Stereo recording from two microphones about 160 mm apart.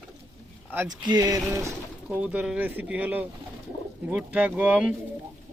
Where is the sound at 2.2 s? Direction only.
5° right (ahead or behind).